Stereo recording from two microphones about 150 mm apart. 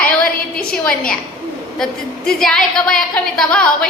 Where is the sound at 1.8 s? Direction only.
5° left (ahead or behind).